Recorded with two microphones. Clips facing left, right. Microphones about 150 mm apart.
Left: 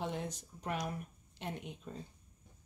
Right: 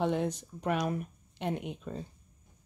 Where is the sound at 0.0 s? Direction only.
70° right (ahead or behind).